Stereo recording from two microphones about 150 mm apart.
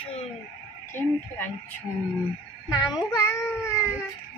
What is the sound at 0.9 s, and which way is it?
Speech, 15° left (ahead or behind).